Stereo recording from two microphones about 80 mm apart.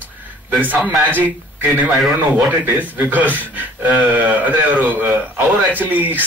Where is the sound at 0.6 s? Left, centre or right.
Right.